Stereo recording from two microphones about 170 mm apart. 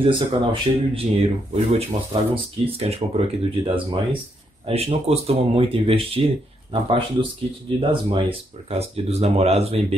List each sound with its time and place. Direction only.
0.0 s speech: 30° right (ahead or behind)